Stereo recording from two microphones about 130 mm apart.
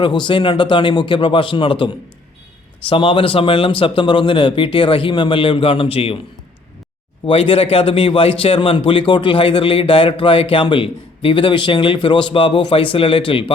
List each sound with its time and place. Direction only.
0.0 s a man's voice: 35° left (ahead or behind)
7.3 s a man's voice: 45° left (ahead or behind)